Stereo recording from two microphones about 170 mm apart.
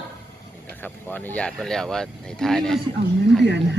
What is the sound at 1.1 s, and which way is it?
Speech, 10° left (ahead or behind).